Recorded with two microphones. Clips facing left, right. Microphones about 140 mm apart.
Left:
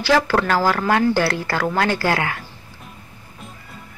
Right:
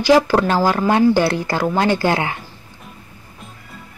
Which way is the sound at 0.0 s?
15° right (ahead or behind).